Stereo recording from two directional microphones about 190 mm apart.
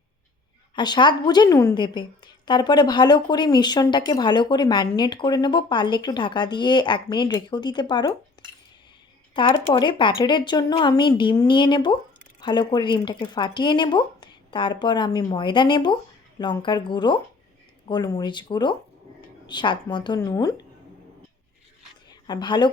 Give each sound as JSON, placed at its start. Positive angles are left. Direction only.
{"t": 0.8, "sound": "a woman's voice", "side_deg": 25}
{"t": 8.4, "sound": "dishes", "side_deg": 25}
{"t": 9.3, "sound": "a woman's voice", "side_deg": 25}
{"t": 22.3, "sound": "a woman's voice", "side_deg": 25}